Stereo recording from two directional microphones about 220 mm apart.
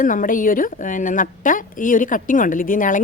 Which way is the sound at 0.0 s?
35° left (ahead or behind).